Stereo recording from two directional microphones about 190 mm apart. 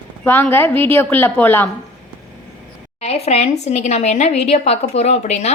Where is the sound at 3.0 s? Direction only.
35° left (ahead or behind).